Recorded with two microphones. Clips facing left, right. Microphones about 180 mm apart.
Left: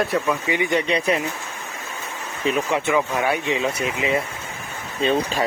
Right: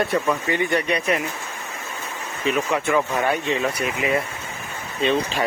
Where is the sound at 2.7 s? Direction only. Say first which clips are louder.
Left 1 dB; 25° left (ahead or behind).